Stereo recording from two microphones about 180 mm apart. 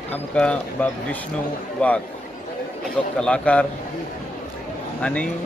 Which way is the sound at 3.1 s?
5° left (ahead or behind).